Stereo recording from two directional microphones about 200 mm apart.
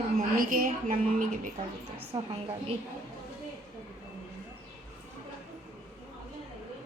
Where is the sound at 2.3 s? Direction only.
30° right (ahead or behind).